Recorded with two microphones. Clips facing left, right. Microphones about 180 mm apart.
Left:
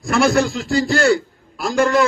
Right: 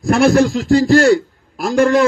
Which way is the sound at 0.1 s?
60° right (ahead or behind).